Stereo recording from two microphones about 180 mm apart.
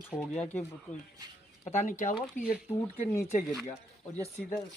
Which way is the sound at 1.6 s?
40° left (ahead or behind).